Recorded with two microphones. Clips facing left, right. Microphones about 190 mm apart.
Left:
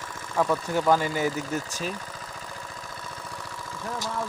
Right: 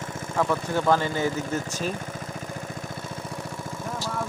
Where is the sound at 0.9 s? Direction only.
10° left (ahead or behind).